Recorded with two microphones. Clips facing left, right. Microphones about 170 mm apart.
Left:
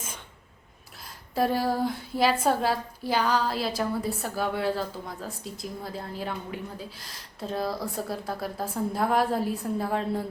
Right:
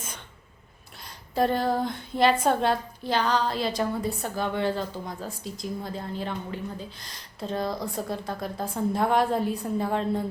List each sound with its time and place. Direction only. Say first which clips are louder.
1.0 s a woman's voice: right 1 dB; 5° left (ahead or behind)